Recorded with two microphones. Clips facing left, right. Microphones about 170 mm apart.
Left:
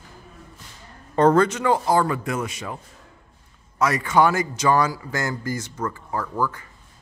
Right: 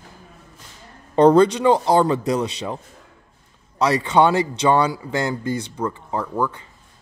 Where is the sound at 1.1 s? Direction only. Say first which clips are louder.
Right 4 dB; 15° right (ahead or behind).